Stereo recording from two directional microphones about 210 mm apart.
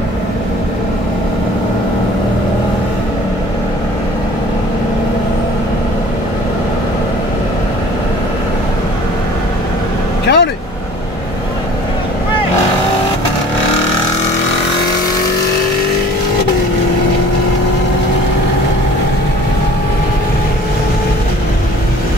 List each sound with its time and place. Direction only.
10.2 s vehicle: 55° left (ahead or behind)